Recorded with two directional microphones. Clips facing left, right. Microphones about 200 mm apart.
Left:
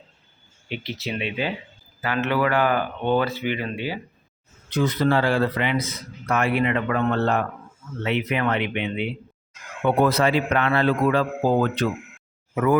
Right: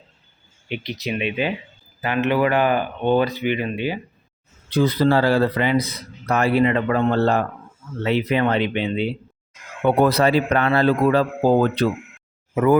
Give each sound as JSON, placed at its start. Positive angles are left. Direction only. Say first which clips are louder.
{"t": 0.7, "sound": "speech", "louder": "right 3 dB", "side_deg": -15}
{"t": 4.7, "sound": "a man's voice", "louder": "right 3 dB", "side_deg": -35}